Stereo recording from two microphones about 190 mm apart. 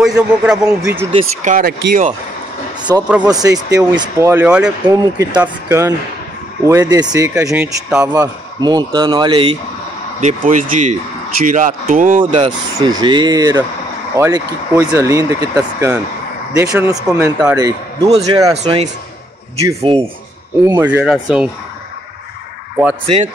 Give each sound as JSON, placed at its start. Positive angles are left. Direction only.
{"t": 0.0, "sound": "a man's voice", "side_deg": -5}
{"t": 1.4, "sound": "speech", "side_deg": -45}
{"t": 2.9, "sound": "speech", "side_deg": -15}
{"t": 4.8, "sound": "speech", "side_deg": -20}
{"t": 8.1, "sound": "speech", "side_deg": -20}
{"t": 10.2, "sound": "speech", "side_deg": -45}
{"t": 12.4, "sound": "speech", "side_deg": -25}
{"t": 18.5, "sound": "speech", "side_deg": -35}
{"t": 19.9, "sound": "speech", "side_deg": -25}
{"t": 20.6, "sound": "speech", "side_deg": -10}